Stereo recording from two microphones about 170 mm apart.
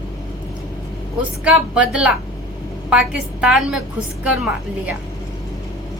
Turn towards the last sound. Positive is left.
turn(degrees=-10)  # may be behind; listen again after turning